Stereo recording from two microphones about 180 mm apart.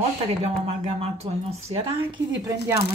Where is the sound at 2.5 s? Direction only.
15° right (ahead or behind).